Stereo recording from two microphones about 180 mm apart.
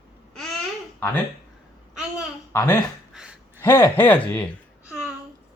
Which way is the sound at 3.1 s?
5° right (ahead or behind).